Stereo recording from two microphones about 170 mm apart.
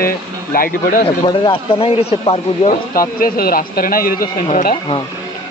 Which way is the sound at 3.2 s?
60° left (ahead or behind).